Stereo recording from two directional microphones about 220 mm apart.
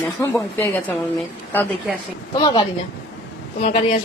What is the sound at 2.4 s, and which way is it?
Speech, 20° left (ahead or behind).